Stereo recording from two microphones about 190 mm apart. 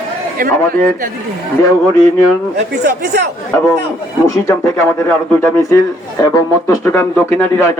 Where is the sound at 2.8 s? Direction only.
60° right (ahead or behind).